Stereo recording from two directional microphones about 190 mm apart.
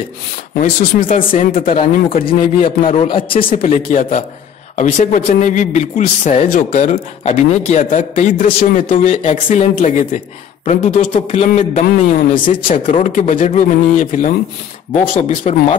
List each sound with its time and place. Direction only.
0.6 s speech: 45° left (ahead or behind)
2.9 s speech: 30° left (ahead or behind)
3.6 s a man's voice: 45° left (ahead or behind)